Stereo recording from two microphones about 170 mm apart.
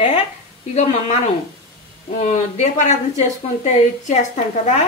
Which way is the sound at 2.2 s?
45° left (ahead or behind).